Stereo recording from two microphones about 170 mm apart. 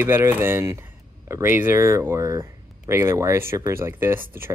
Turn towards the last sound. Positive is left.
turn(degrees=-15)  # may be behind; listen again after turning